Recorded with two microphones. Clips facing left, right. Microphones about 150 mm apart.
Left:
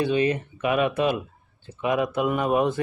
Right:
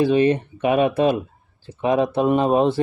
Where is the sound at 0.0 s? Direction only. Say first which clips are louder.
Right 6 dB; 35° right (ahead or behind).